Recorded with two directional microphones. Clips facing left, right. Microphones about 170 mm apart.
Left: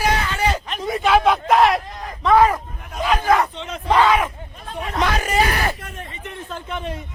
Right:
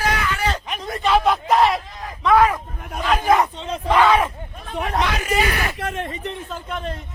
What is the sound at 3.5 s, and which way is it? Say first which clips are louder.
Speech: even; 30° right (ahead or behind).